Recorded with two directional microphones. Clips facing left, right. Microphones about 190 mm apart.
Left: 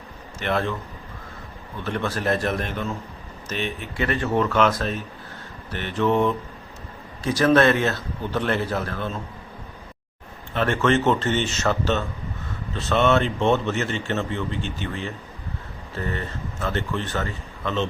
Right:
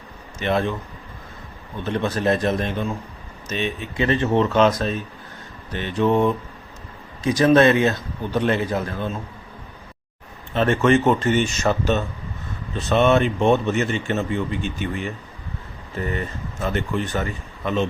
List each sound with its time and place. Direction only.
0.3 s speech: 15° right (ahead or behind)
1.8 s speech: 20° right (ahead or behind)
10.5 s speech: 20° right (ahead or behind)